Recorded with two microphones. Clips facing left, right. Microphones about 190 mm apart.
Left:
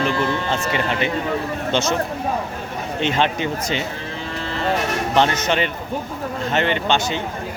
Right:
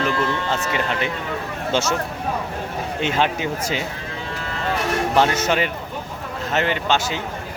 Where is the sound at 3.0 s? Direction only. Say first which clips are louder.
Left 1 dB; 5° right (ahead or behind).